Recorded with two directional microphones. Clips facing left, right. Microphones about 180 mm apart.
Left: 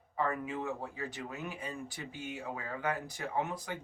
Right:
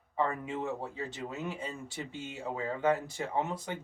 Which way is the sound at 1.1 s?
25° right (ahead or behind).